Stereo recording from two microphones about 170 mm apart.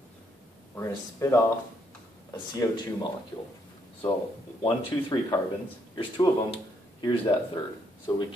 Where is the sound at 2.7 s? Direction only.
25° left (ahead or behind).